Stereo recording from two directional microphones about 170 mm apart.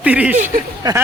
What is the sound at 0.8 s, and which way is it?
Speech, 20° right (ahead or behind).